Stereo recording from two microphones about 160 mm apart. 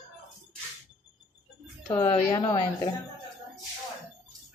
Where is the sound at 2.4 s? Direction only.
35° left (ahead or behind).